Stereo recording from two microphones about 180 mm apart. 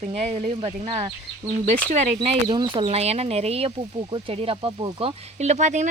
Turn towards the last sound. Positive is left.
turn(degrees=-40)  # may be behind; listen again after turning